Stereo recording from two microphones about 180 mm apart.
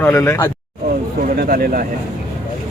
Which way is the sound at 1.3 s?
55° right (ahead or behind).